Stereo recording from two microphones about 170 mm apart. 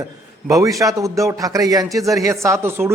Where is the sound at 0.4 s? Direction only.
20° right (ahead or behind).